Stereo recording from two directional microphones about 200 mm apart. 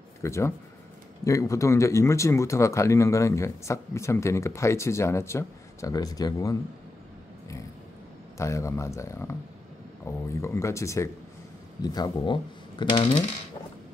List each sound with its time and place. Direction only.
0.2 s speech: 15° left (ahead or behind)
8.4 s speech: 15° left (ahead or behind)